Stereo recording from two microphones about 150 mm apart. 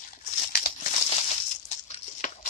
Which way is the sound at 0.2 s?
80° left.